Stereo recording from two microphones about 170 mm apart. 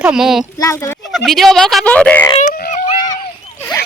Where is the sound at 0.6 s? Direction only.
15° left (ahead or behind).